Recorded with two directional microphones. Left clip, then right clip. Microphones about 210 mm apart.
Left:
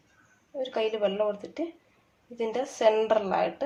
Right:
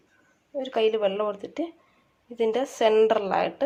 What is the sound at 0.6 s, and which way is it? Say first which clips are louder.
Speech: right 4 dB; 30° right (ahead or behind).